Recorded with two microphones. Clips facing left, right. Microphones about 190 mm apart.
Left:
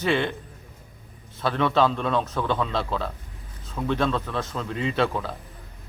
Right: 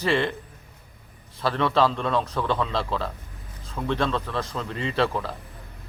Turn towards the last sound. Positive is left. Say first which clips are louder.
# even
turn(degrees=0)  # may be behind; listen again after turning